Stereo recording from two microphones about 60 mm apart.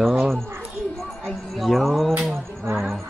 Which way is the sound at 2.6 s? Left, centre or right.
Right.